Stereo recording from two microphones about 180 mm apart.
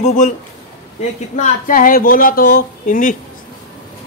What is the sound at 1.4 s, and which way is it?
Speech, 45° left (ahead or behind).